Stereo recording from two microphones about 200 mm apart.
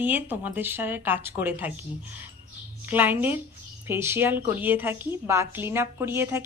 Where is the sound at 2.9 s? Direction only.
10° right (ahead or behind).